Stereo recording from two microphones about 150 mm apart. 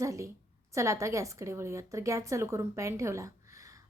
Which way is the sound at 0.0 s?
20° right (ahead or behind).